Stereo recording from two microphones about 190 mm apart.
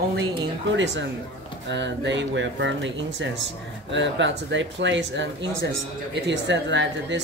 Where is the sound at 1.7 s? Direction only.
65° right (ahead or behind).